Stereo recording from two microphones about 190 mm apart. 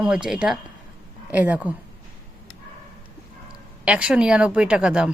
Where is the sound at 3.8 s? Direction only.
5° right (ahead or behind).